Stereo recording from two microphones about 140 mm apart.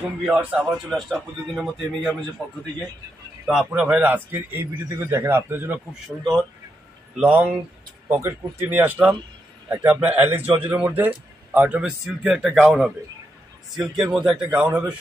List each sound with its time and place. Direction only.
0.2 s speech: 10° right (ahead or behind)
2.4 s speech: 10° left (ahead or behind)
3.4 s a man's voice: 5° right (ahead or behind)
7.2 s a man's voice: 10° right (ahead or behind)
14.1 s a man's voice: 5° right (ahead or behind)